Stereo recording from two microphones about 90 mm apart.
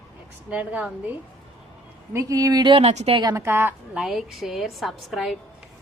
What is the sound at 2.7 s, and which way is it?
Speech, 85° right.